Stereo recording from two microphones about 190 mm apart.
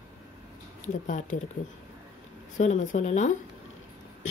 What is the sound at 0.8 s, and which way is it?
Speech, 40° left (ahead or behind).